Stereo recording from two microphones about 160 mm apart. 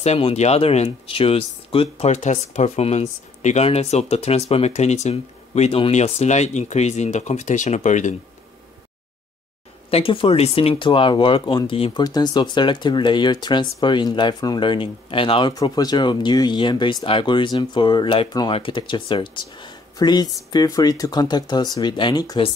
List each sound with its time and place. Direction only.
0.0 s speech: 40° left (ahead or behind)
9.8 s speech: 35° left (ahead or behind)
12.0 s speech: 25° left (ahead or behind)